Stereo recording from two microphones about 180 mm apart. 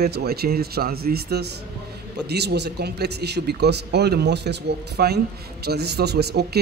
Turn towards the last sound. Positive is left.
turn(degrees=-65)  # may be behind; listen again after turning